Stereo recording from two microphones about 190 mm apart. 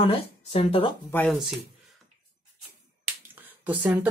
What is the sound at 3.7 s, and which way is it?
Speech, 10° right (ahead or behind).